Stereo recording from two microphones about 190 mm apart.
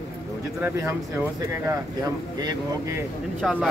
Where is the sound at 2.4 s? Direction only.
20° right (ahead or behind).